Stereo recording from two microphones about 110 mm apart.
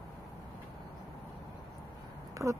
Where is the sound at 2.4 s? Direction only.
Centre (ahead or behind).